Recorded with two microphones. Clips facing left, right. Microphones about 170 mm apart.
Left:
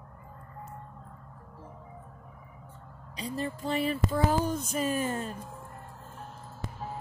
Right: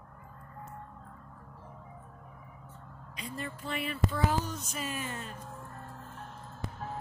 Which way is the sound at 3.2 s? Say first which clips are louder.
Left 6 dB; 35° left (ahead or behind).